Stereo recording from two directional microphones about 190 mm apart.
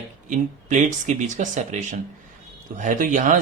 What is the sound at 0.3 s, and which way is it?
Speech, 40° right (ahead or behind).